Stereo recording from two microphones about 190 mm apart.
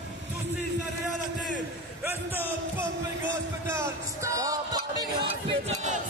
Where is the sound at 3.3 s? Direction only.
15° right (ahead or behind); by 6.0 s 30° right (ahead or behind).